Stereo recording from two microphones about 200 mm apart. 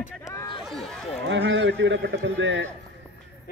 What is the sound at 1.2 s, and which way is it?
Speech, 65° right (ahead or behind).